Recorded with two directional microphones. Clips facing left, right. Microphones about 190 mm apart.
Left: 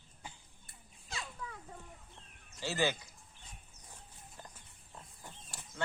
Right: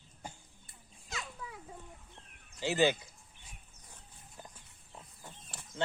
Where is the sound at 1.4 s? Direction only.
10° right (ahead or behind).